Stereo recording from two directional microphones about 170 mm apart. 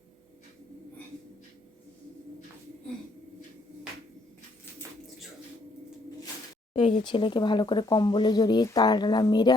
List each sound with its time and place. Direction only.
6.7 s speech: 30° left (ahead or behind)